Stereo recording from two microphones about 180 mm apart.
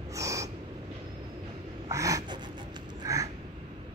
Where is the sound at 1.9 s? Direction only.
20° right (ahead or behind).